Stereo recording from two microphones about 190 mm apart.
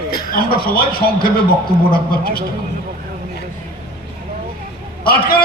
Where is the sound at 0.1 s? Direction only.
50° left (ahead or behind).